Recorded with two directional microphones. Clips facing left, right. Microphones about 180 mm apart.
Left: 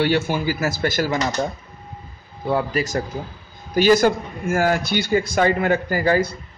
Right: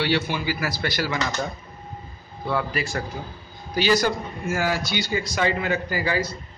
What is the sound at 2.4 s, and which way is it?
A man's voice, 40° left (ahead or behind).